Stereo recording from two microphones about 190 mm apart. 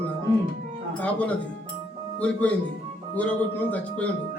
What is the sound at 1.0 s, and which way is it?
Speech, 5° left (ahead or behind).